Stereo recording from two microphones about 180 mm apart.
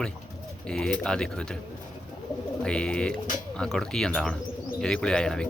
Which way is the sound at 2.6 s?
5° left (ahead or behind).